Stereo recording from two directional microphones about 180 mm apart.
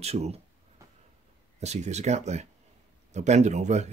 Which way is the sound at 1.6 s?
40° right (ahead or behind).